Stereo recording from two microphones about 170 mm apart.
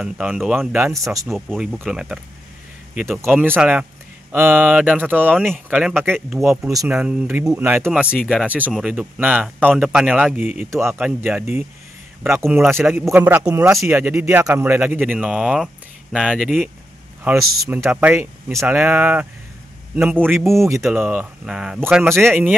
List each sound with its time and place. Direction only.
0.0 s speech: 5° right (ahead or behind)
6.3 s speech: 15° right (ahead or behind)
7.0 s speech: 5° right (ahead or behind)
20.8 s speech: 10° right (ahead or behind)